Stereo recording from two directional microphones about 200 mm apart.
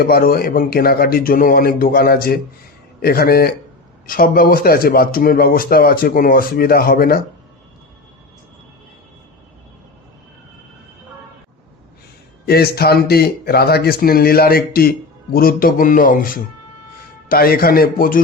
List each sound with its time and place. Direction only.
0.0 s speech: 50° left (ahead or behind)
12.5 s speech: 50° left (ahead or behind)